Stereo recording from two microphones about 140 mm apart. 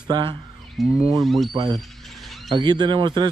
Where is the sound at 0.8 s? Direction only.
Centre (ahead or behind).